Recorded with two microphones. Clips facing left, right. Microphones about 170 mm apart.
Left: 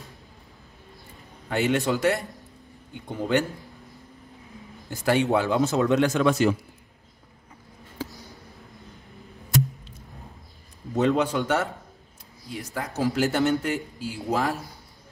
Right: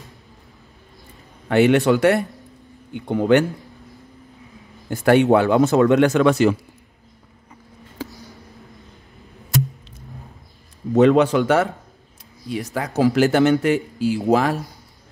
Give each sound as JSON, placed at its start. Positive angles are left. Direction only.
{"t": 1.5, "sound": "a man's voice", "side_deg": -70}
{"t": 4.8, "sound": "speech", "side_deg": -60}
{"t": 11.0, "sound": "a man's voice", "side_deg": -90}